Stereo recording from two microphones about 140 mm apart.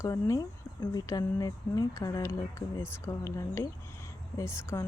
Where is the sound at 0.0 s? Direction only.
20° left (ahead or behind).